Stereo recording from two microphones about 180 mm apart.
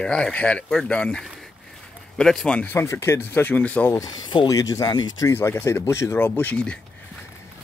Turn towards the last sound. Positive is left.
turn(degrees=5)  # may be behind; listen again after turning